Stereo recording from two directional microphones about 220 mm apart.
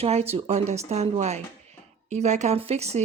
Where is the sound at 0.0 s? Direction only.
30° right (ahead or behind).